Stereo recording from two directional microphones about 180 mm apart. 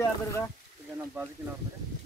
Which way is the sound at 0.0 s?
15° left (ahead or behind).